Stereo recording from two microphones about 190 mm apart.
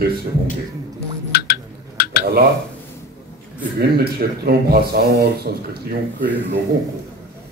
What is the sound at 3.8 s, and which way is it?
A man's voice, 55° right (ahead or behind).